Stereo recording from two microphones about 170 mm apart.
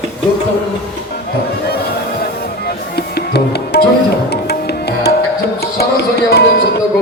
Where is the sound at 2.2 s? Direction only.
70° left (ahead or behind).